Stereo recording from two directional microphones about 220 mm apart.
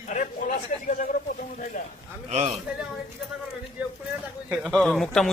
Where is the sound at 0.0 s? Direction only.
35° left (ahead or behind).